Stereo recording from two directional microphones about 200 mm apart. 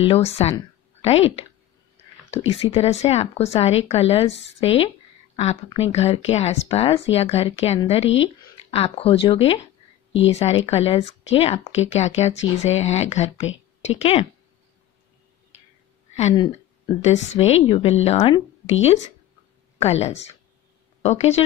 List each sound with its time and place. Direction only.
0.1 s a woman's voice: 30° left (ahead or behind)
16.2 s a woman's voice: 30° left (ahead or behind)